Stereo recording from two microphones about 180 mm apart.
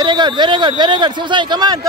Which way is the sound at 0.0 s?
25° right (ahead or behind).